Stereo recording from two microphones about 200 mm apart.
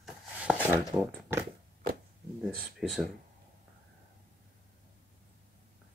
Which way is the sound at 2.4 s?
Centre (ahead or behind).